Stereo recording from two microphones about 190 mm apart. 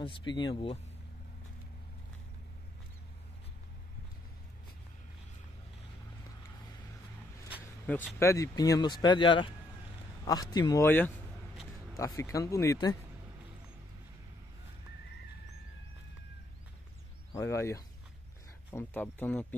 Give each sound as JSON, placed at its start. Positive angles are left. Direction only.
{"t": 0.0, "sound": "speech", "side_deg": 25}
{"t": 7.8, "sound": "speech", "side_deg": 10}
{"t": 17.3, "sound": "speech", "side_deg": 15}